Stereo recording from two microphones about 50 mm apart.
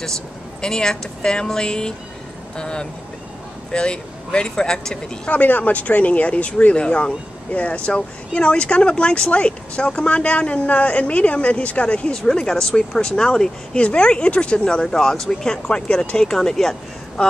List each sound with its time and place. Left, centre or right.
0.6 s speech: centre
5.3 s speech: left
12.2 s speech: centre
17.2 s speech: centre